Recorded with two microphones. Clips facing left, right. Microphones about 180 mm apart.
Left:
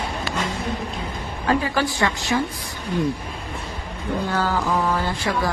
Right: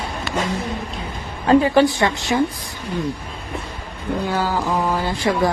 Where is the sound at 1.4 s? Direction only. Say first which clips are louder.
Right 8 dB; 25° right (ahead or behind).